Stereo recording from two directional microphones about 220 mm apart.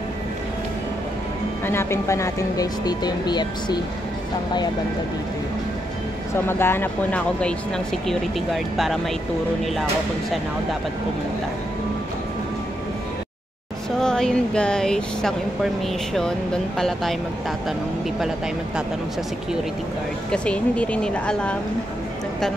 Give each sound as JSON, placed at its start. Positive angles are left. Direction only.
{"t": 1.7, "sound": "speech", "side_deg": 10}
{"t": 6.3, "sound": "speech", "side_deg": 10}
{"t": 13.9, "sound": "speech", "side_deg": 0}
{"t": 20.2, "sound": "speech", "side_deg": 5}